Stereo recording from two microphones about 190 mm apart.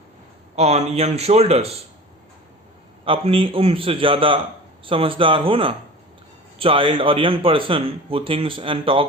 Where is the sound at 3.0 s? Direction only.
30° right (ahead or behind).